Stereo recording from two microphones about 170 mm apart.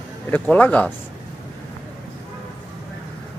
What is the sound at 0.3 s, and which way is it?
Speech, 10° left (ahead or behind).